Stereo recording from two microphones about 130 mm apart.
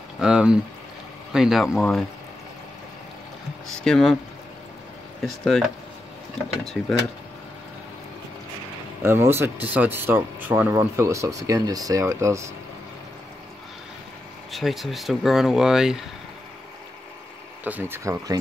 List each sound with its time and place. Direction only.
0.2 s speech: 5° right (ahead or behind)
3.6 s speech: 5° left (ahead or behind)
5.2 s speech: 5° left (ahead or behind)
6.6 s speech: centre (ahead or behind)
9.0 s speech: 20° right (ahead or behind)
14.5 s speech: centre (ahead or behind)
17.6 s speech: 15° right (ahead or behind)